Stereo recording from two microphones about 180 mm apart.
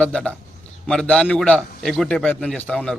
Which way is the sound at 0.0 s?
5° left (ahead or behind).